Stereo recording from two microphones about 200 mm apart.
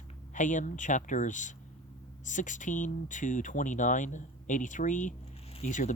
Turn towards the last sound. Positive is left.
turn(degrees=35)  # may be behind; listen again after turning